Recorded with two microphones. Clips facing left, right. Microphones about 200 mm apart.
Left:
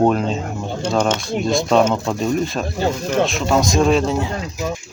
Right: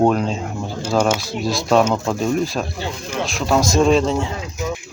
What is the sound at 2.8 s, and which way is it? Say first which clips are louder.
Speech: left 7 dB; 40° left (ahead or behind).